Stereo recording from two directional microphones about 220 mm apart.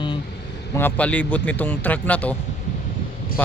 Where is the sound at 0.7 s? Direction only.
10° left (ahead or behind).